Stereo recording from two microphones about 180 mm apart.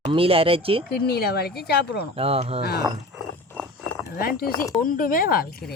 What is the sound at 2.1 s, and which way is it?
Speech, 35° right (ahead or behind).